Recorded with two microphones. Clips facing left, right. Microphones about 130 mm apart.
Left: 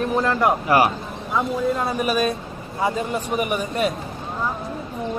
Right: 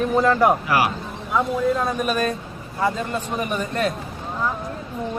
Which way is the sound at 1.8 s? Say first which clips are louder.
Left 1 dB; 5° left (ahead or behind).